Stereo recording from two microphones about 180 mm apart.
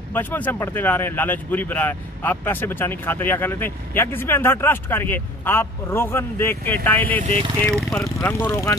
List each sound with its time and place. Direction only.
0.1 s speech: 10° left (ahead or behind)
7.2 s speech: 30° right (ahead or behind)
8.0 s speech: 15° left (ahead or behind)